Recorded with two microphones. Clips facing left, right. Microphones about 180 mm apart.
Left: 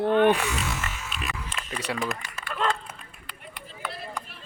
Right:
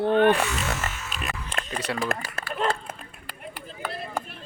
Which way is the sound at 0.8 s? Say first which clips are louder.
Right 2 dB; 40° right (ahead or behind).